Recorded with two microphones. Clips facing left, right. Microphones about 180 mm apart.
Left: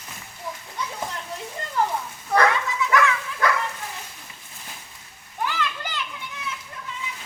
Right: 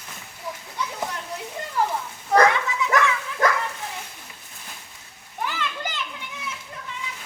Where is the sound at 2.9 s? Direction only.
45° right (ahead or behind).